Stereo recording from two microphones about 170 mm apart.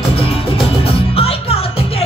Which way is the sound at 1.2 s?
35° left (ahead or behind).